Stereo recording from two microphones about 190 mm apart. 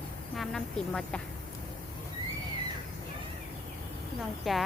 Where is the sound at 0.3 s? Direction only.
5° left (ahead or behind).